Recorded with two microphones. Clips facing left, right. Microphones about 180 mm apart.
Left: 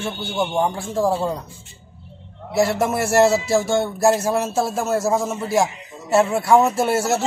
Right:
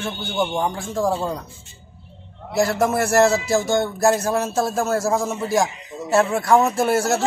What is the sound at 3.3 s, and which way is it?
Speech, 30° left (ahead or behind).